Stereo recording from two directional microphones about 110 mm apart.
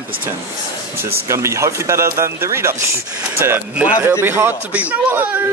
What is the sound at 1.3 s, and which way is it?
A man's voice, 25° right (ahead or behind).